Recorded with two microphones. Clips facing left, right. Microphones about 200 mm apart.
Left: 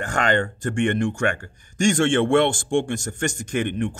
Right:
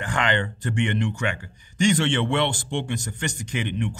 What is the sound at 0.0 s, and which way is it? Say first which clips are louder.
Speech: left 3 dB; 45° left (ahead or behind).